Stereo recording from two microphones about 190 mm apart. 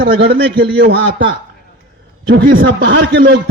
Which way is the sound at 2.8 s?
75° right (ahead or behind).